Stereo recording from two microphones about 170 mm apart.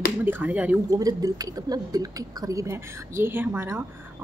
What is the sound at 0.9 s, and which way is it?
Speech, 20° right (ahead or behind).